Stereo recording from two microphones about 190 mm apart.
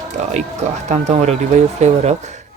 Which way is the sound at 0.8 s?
35° right (ahead or behind).